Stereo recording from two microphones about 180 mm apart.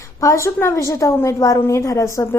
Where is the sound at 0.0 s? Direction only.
15° left (ahead or behind).